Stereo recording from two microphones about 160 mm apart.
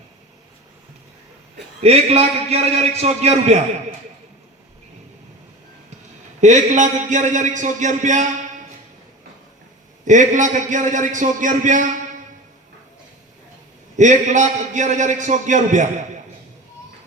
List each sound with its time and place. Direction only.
1.8 s a man's voice: 40° right (ahead or behind)
6.4 s a man's voice: 45° right (ahead or behind)
10.1 s a man's voice: 50° right (ahead or behind)
13.9 s a man's voice: 50° right (ahead or behind)